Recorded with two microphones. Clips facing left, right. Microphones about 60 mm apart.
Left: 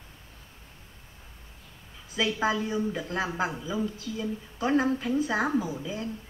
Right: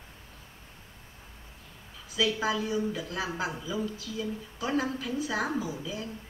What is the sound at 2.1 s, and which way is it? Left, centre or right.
Speech, left.